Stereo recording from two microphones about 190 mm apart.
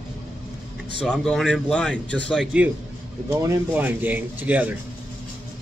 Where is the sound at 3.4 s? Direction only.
15° right (ahead or behind).